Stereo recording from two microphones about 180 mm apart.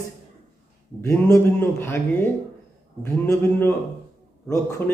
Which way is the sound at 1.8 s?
10° left (ahead or behind).